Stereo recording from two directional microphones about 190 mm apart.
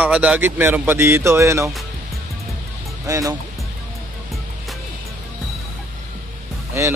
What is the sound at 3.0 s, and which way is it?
Speech, 15° right (ahead or behind).